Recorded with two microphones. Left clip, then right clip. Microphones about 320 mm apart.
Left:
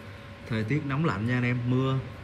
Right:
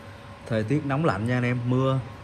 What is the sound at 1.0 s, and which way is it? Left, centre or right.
Speech, centre.